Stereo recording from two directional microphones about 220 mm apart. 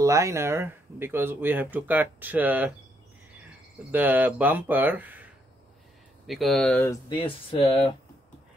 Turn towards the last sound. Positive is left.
turn(degrees=25)  # may be behind; listen again after turning